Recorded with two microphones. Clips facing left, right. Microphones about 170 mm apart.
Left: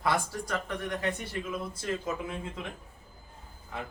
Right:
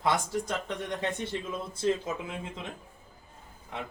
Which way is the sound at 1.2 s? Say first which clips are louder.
Right 1 dB; 25° right (ahead or behind).